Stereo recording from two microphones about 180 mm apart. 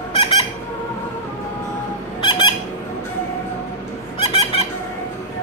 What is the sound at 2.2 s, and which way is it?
Squeak, 25° left (ahead or behind).